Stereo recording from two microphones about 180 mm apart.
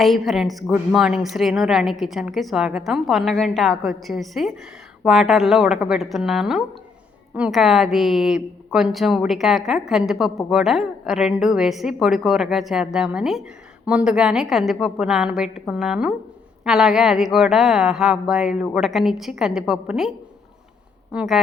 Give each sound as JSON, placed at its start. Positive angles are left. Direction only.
{"t": 0.0, "sound": "a woman's voice", "side_deg": 0}